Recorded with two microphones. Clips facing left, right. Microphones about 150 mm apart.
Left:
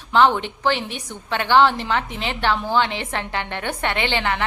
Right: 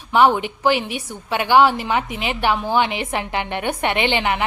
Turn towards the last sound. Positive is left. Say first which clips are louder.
# right 3 dB
turn(degrees=-15)  # may be behind; listen again after turning